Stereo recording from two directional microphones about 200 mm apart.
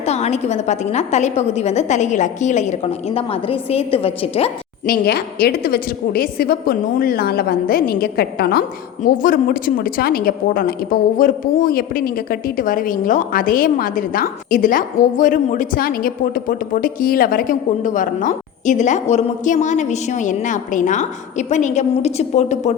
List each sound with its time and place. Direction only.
0.0 s a woman's voice: 35° left (ahead or behind)
4.9 s a woman's voice: 50° left (ahead or behind); by 22.7 s 35° left (ahead or behind)